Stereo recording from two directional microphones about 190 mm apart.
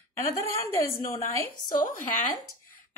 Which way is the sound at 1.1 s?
15° left (ahead or behind).